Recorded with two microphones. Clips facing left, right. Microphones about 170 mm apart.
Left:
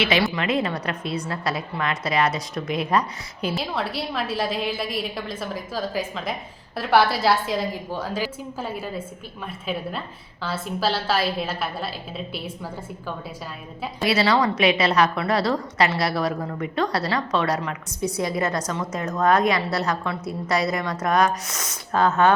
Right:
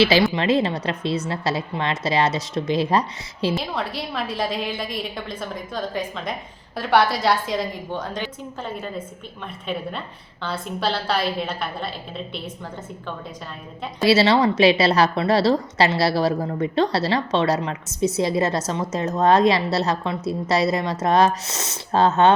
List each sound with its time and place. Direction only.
0.3 s a woman's voice: 30° right (ahead or behind)
3.5 s a woman's voice: centre (ahead or behind)
14.0 s a woman's voice: 25° right (ahead or behind)